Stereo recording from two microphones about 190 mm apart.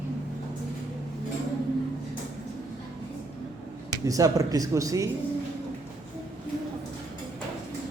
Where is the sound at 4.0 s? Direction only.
15° right (ahead or behind).